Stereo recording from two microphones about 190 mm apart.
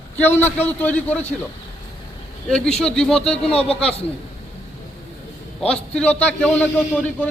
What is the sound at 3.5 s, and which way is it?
Speech, 30° left (ahead or behind).